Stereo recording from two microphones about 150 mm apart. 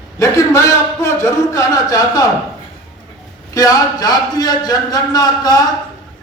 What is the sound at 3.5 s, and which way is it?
A man's voice, 25° left (ahead or behind).